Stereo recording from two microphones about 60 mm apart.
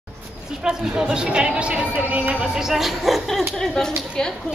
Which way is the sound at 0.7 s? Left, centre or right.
Centre.